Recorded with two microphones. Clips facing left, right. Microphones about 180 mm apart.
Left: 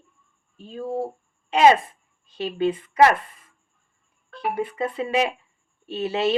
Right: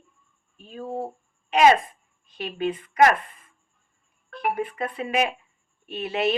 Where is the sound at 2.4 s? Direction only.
30° left (ahead or behind).